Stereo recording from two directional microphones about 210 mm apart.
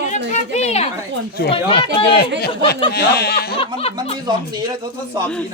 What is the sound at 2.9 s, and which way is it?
Speech, 50° left (ahead or behind).